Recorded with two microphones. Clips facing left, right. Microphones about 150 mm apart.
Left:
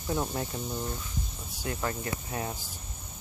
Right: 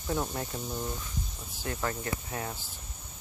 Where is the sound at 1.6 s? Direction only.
25° left (ahead or behind).